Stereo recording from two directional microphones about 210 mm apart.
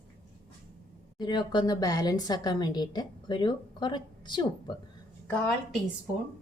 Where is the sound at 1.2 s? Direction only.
20° left (ahead or behind).